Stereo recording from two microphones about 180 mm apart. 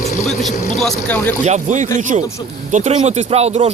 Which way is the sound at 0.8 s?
10° left (ahead or behind).